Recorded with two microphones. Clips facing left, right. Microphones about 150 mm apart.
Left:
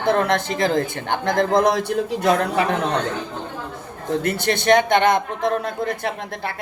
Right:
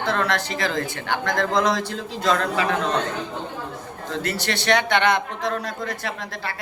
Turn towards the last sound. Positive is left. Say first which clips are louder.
# left 4 dB
turn(degrees=55)  # may be behind; listen again after turning